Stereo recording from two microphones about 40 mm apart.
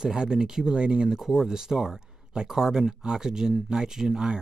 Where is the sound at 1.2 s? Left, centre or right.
Centre.